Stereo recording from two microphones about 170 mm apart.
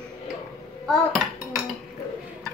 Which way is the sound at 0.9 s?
Centre (ahead or behind).